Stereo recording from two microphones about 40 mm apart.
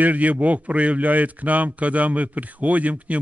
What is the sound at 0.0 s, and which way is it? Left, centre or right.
A man's voice, right.